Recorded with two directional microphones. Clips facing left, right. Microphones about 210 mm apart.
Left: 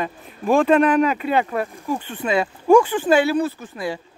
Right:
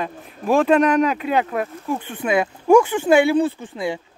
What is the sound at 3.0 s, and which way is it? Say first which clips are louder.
Speech: right 2 dB; 25° right (ahead or behind).